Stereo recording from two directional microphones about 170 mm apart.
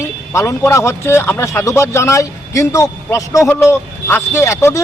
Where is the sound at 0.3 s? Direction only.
15° left (ahead or behind).